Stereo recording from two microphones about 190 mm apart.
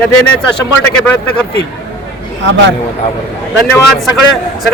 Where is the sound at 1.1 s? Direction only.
5° left (ahead or behind).